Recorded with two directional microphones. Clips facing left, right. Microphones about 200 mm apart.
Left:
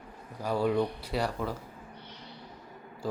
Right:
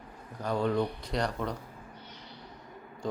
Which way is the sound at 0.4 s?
5° left (ahead or behind).